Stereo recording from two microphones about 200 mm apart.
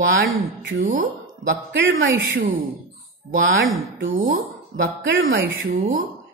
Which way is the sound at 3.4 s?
85° right.